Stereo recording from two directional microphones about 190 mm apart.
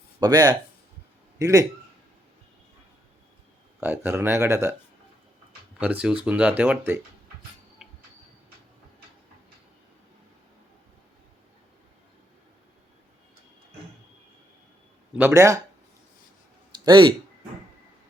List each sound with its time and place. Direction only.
0.2 s a man's voice: 20° right (ahead or behind)
3.8 s speech: 10° right (ahead or behind)
5.8 s speech: 5° right (ahead or behind)
7.8 s a sound: centre (ahead or behind)
15.2 s speech: 15° right (ahead or behind)
16.8 s speech: 25° right (ahead or behind)